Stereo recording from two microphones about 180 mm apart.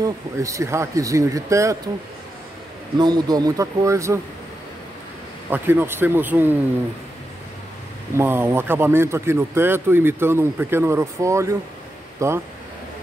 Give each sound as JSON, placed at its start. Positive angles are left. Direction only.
{"t": 0.0, "sound": "speech", "side_deg": -15}
{"t": 3.0, "sound": "a man's voice", "side_deg": -20}
{"t": 5.5, "sound": "speech", "side_deg": -10}
{"t": 8.2, "sound": "speech", "side_deg": -15}